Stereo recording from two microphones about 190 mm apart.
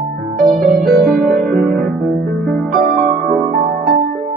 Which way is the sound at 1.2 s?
50° right (ahead or behind).